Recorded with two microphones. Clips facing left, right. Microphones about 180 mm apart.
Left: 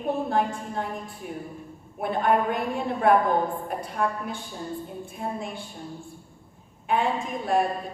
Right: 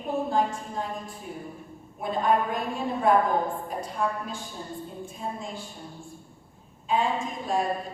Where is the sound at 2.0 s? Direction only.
65° left (ahead or behind).